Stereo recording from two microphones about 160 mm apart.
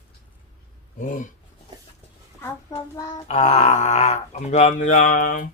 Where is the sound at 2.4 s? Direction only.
20° left (ahead or behind).